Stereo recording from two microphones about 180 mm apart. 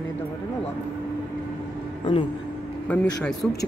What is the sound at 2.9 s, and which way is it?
Speech, 10° left (ahead or behind).